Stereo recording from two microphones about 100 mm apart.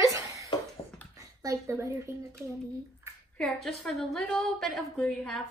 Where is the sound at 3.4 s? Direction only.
5° left (ahead or behind).